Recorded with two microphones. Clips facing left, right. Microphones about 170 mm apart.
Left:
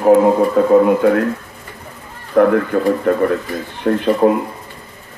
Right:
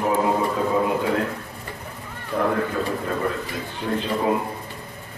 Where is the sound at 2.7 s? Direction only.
55° left (ahead or behind).